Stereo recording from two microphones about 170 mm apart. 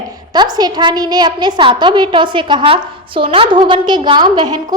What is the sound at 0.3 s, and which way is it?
A woman's voice, 25° right (ahead or behind).